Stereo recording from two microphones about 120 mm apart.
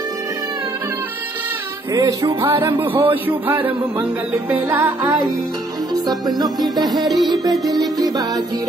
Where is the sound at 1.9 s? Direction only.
30° right (ahead or behind).